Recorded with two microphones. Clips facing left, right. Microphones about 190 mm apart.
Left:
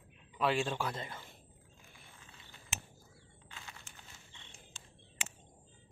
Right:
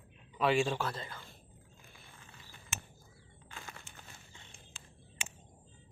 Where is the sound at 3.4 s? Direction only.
50° right (ahead or behind).